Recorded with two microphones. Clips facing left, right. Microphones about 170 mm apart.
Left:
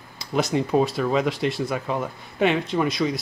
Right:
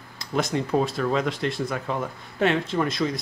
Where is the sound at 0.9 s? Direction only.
5° left (ahead or behind).